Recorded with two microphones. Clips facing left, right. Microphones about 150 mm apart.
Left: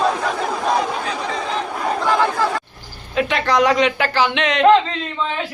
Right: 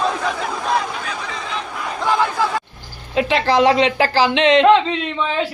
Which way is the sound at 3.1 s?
25° right (ahead or behind).